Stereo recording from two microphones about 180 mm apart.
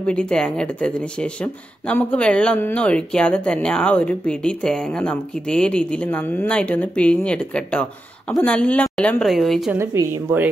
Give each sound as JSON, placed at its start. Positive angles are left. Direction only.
{"t": 0.0, "sound": "speech", "side_deg": 5}
{"t": 9.8, "sound": "speech", "side_deg": -15}